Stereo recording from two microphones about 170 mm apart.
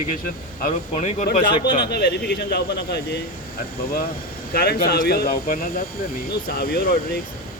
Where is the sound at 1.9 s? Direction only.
75° left (ahead or behind).